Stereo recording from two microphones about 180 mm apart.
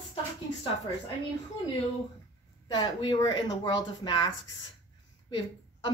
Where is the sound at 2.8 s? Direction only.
25° left (ahead or behind).